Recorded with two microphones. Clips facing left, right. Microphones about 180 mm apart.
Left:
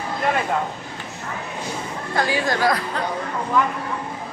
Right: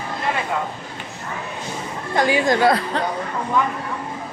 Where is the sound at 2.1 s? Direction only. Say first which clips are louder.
Right 4 dB; 20° right (ahead or behind).